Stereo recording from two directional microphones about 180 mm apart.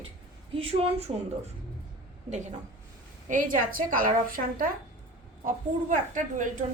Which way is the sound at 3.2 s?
45° right (ahead or behind).